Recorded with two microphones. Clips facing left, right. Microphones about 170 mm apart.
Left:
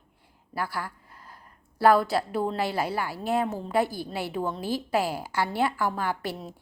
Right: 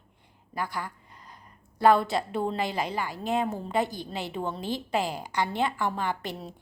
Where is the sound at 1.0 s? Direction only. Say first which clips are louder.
Left 1 dB; 5° left (ahead or behind).